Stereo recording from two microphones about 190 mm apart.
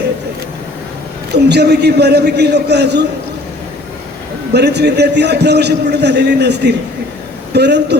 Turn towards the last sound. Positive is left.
turn(degrees=-60)  # may be behind; listen again after turning